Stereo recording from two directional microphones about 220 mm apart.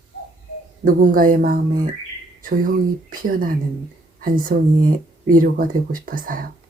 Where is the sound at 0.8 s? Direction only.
40° right (ahead or behind).